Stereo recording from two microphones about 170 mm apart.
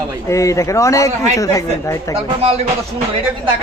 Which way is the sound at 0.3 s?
15° left (ahead or behind).